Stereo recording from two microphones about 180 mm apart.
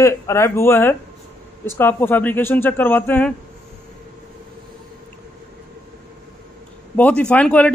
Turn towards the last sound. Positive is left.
turn(degrees=10)  # may be behind; listen again after turning